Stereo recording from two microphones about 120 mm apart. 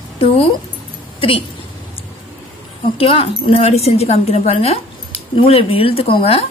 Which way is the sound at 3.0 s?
50° left (ahead or behind).